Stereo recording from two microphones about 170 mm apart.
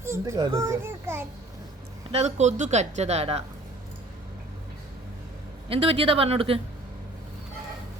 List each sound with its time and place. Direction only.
0.0 s a child's voice: 15° right (ahead or behind)
2.1 s speech: 40° right (ahead or behind)
5.6 s speech: 35° right (ahead or behind)